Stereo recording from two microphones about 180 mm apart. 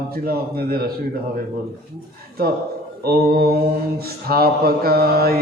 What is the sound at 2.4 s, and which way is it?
Mantra, 60° right (ahead or behind).